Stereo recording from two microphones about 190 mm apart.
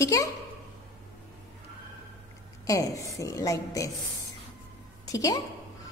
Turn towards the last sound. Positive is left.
turn(degrees=20)  # may be behind; listen again after turning